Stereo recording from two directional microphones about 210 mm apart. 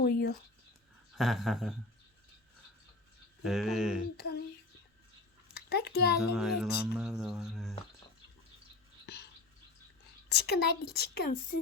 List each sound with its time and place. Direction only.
0.0 s a woman's voice: 45° left (ahead or behind)
1.1 s speech: centre (ahead or behind)
3.4 s speech: centre (ahead or behind)
4.2 s a sound: 50° left (ahead or behind)
5.5 s a child's voice: 50° left (ahead or behind)
6.3 s speech: centre (ahead or behind)
9.1 s a sound: 50° left (ahead or behind)
10.2 s a woman's voice: 50° left (ahead or behind)